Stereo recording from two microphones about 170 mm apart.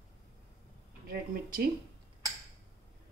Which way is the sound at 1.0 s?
65° right (ahead or behind).